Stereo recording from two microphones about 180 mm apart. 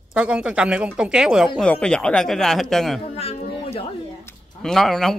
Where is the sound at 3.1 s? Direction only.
35° left (ahead or behind).